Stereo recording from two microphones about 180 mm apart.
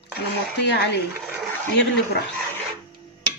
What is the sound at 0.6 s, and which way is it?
Speech, 70° left (ahead or behind).